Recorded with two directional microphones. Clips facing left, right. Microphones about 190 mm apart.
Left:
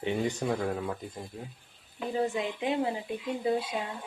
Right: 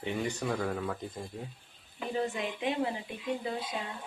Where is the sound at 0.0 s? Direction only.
20° left (ahead or behind).